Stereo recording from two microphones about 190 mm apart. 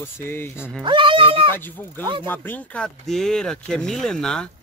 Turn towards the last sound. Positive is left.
turn(degrees=5)  # may be behind; listen again after turning